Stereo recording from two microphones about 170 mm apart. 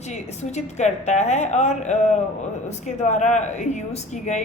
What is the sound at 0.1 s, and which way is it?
A woman's voice, 40° left (ahead or behind).